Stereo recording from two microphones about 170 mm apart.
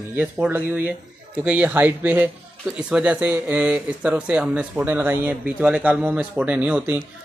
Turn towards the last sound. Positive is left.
turn(degrees=-10)  # may be behind; listen again after turning